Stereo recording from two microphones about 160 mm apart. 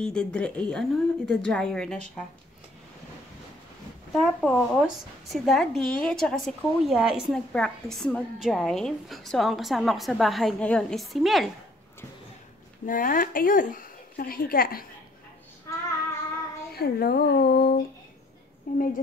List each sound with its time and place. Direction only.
0.0 s a woman's voice: 5° left (ahead or behind)
4.1 s a woman's voice: centre (ahead or behind)
12.8 s a woman's voice: 60° left (ahead or behind)
16.7 s speech: 75° left (ahead or behind)
18.7 s a woman's voice: 60° left (ahead or behind)